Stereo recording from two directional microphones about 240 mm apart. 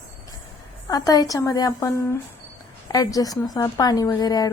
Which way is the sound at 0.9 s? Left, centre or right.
Centre.